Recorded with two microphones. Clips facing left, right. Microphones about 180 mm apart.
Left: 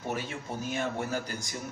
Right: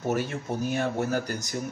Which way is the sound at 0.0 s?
45° right (ahead or behind).